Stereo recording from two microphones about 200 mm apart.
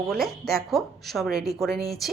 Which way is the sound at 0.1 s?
Centre (ahead or behind).